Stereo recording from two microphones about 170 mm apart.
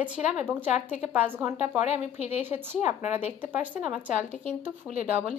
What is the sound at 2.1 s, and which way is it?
Speech, 40° left (ahead or behind).